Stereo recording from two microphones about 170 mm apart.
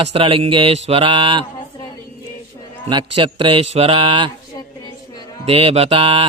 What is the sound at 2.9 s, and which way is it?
Speech, 30° right (ahead or behind).